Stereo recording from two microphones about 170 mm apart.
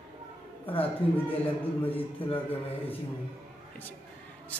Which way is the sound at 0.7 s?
35° left (ahead or behind).